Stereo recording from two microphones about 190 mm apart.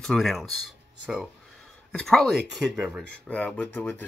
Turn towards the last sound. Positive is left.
turn(degrees=10)  # may be behind; listen again after turning